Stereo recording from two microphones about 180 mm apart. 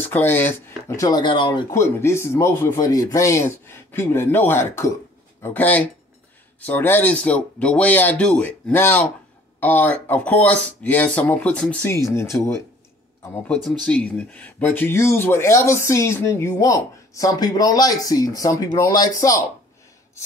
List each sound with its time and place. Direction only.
0.0 s speech: 10° left (ahead or behind); by 1.7 s 25° left (ahead or behind)
1.7 s speech: 15° left (ahead or behind)